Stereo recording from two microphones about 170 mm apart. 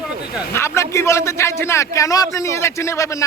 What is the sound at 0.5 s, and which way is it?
A man's voice, 15° left (ahead or behind).